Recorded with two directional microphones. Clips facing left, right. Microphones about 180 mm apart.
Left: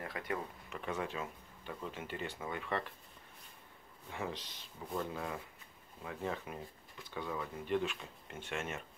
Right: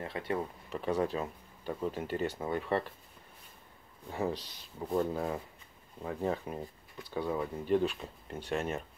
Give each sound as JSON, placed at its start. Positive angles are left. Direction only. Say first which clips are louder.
{"t": 0.0, "sound": "speech", "louder": "right 5 dB", "side_deg": -30}
{"t": 4.1, "sound": "speech", "louder": "right 7 dB", "side_deg": -35}